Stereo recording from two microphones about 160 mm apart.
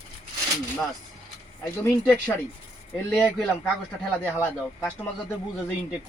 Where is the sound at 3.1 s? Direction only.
Centre (ahead or behind).